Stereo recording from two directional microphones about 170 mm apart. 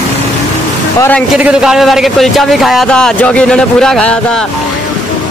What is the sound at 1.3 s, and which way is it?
A man's voice, 5° right (ahead or behind).